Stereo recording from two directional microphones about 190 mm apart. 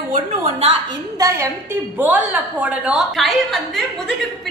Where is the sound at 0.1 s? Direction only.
35° right (ahead or behind).